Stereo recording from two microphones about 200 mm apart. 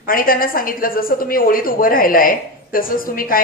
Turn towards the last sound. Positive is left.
turn(degrees=45)  # may be behind; listen again after turning